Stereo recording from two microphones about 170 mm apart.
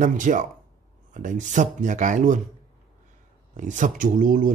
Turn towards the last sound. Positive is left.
turn(degrees=-50)  # may be behind; listen again after turning